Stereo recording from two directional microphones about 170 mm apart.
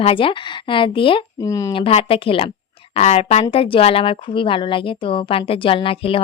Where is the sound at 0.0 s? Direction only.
30° left (ahead or behind).